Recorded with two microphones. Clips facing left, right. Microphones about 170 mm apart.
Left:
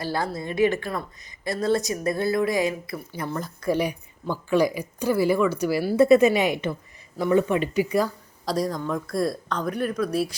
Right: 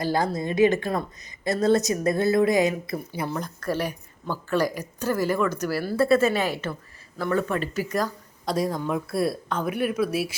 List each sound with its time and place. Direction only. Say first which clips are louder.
0.0 s a woman's voice: right 3 dB; 15° right (ahead or behind)
3.1 s speech: left 1 dB; 10° right (ahead or behind)
3.6 s speech: left 5 dB; 10° left (ahead or behind)
8.5 s speech: right 1 dB; 5° right (ahead or behind)